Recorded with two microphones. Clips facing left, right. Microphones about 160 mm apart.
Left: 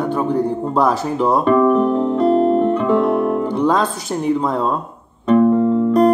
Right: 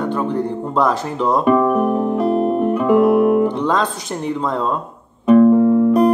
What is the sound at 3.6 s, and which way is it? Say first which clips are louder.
Speech: left 2 dB; 10° left (ahead or behind).